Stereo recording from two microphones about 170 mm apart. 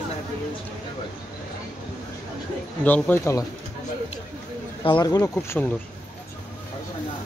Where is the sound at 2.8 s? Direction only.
10° left (ahead or behind).